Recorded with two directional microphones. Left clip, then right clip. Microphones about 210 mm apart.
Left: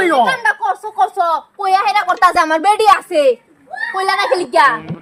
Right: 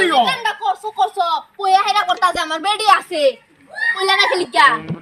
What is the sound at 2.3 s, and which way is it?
Speech, 20° left (ahead or behind).